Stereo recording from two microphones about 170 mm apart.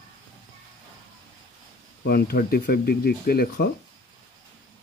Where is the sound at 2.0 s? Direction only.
65° left (ahead or behind).